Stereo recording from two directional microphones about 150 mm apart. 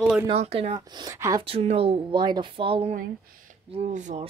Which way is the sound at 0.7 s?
25° right (ahead or behind).